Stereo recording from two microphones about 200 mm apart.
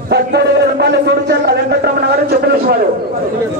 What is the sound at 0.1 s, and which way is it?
A man's voice, 55° right (ahead or behind).